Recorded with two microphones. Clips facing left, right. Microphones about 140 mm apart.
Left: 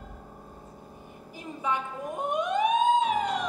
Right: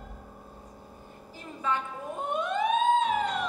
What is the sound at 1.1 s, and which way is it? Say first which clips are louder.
Emergency vehicle: left 4 dB; 15° left (ahead or behind).